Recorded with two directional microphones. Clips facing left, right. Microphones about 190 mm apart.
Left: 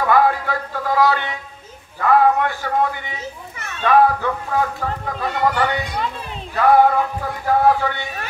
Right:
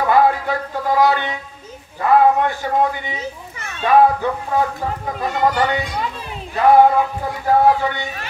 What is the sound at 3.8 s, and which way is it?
Speech, 20° right (ahead or behind).